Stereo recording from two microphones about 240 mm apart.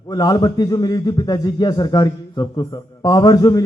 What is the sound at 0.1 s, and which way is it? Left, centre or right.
A man's voice, centre.